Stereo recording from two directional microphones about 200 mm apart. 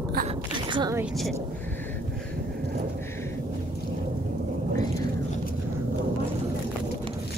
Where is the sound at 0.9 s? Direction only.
Centre (ahead or behind).